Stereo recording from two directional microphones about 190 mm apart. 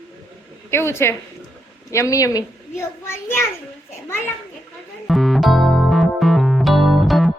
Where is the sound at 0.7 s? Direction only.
15° left (ahead or behind).